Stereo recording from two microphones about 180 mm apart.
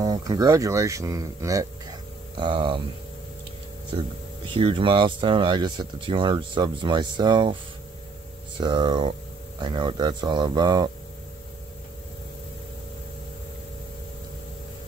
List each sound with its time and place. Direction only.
0.0 s speech: 20° right (ahead or behind)
3.9 s speech: 25° right (ahead or behind)
8.5 s speech: 25° right (ahead or behind)